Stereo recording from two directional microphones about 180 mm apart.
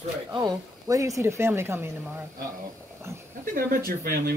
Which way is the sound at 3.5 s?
55° right (ahead or behind).